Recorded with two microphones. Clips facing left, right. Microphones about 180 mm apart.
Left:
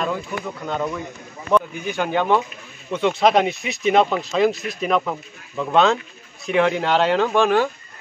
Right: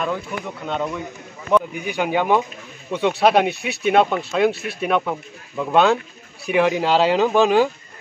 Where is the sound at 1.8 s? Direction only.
10° right (ahead or behind).